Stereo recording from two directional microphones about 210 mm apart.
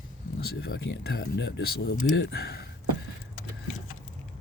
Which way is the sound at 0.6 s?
50° left (ahead or behind).